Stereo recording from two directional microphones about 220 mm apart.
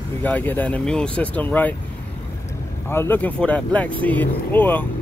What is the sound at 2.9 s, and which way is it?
Speech, 10° left (ahead or behind).